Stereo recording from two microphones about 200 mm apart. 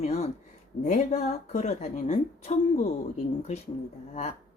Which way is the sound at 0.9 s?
35° left (ahead or behind).